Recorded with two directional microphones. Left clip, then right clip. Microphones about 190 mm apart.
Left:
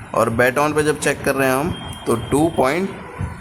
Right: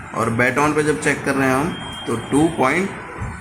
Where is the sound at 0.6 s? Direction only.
40° left (ahead or behind).